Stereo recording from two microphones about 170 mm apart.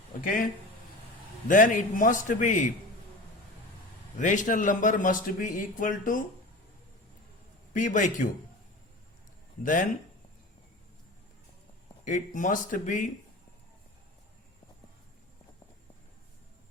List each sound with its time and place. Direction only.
1.5 s a man's voice: 50° left (ahead or behind)
4.2 s a man's voice: 50° left (ahead or behind)
7.7 s a man's voice: 50° left (ahead or behind)
9.6 s a man's voice: 50° left (ahead or behind)
12.0 s a man's voice: 50° left (ahead or behind)